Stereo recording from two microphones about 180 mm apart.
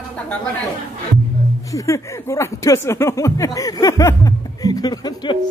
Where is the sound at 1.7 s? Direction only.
15° left (ahead or behind).